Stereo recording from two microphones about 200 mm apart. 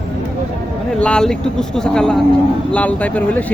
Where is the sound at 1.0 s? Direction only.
5° left (ahead or behind).